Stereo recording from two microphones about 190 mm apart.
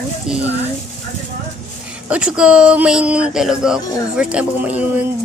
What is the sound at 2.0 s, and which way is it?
Speech, 5° right (ahead or behind).